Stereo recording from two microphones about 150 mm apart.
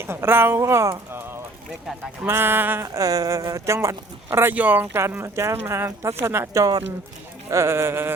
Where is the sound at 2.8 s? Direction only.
25° right (ahead or behind).